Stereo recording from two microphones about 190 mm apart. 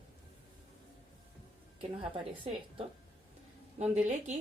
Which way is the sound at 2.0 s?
30° right (ahead or behind).